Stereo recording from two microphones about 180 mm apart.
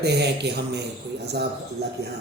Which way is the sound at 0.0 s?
65° right (ahead or behind).